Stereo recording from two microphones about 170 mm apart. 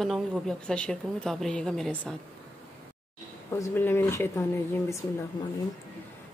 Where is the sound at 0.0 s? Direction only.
Centre (ahead or behind).